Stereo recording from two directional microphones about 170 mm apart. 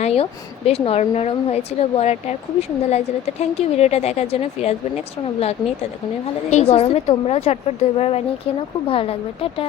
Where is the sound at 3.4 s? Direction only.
40° left (ahead or behind).